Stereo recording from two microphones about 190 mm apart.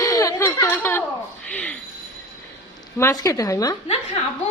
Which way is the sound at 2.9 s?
15° left (ahead or behind).